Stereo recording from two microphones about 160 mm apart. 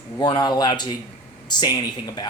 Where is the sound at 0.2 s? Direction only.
25° left (ahead or behind).